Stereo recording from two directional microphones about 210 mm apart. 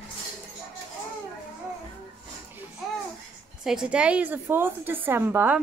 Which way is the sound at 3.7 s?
5° right (ahead or behind).